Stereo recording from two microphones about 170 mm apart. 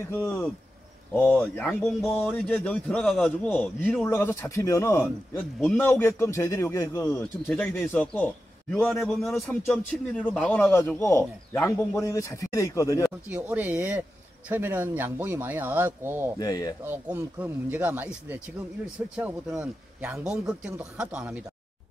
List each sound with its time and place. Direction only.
0.0 s speech: 15° left (ahead or behind)
13.3 s speech: 10° right (ahead or behind)
16.3 s speech: 20° left (ahead or behind)
16.8 s speech: 10° right (ahead or behind)